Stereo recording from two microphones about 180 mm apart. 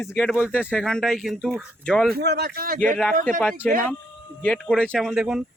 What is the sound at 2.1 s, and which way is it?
Speech, 65° right (ahead or behind).